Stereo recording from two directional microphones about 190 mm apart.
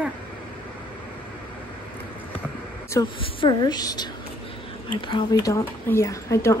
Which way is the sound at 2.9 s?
20° left (ahead or behind).